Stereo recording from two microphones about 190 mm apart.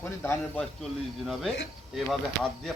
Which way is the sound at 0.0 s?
10° left (ahead or behind).